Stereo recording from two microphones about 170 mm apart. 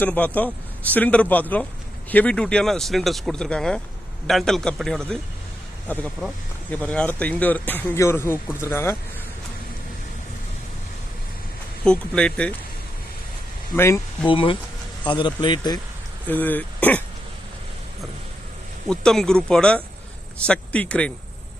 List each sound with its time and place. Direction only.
0.0 s speech: 10° left (ahead or behind)
6.7 s speech: 10° left (ahead or behind)
11.9 s speech: 5° left (ahead or behind)
13.7 s speech: 15° left (ahead or behind)
14.3 s speech: 30° left (ahead or behind)
16.2 s speech: 10° left (ahead or behind)
18.9 s speech: 5° left (ahead or behind)